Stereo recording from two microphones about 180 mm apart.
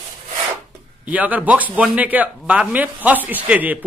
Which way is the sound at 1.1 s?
10° right (ahead or behind).